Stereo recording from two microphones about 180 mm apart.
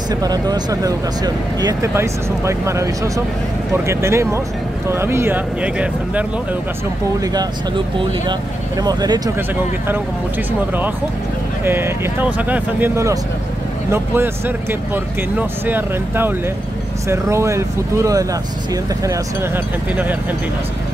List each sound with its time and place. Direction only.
0.1 s speech: 20° right (ahead or behind)
8.3 s speech: 20° right (ahead or behind)
11.6 s speech: 15° right (ahead or behind)